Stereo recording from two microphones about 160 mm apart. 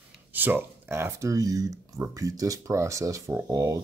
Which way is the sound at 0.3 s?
10° right (ahead or behind).